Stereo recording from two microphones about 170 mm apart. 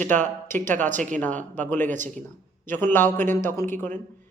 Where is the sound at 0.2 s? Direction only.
15° left (ahead or behind).